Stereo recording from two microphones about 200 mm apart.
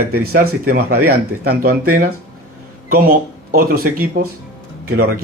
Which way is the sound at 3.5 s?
45° right (ahead or behind).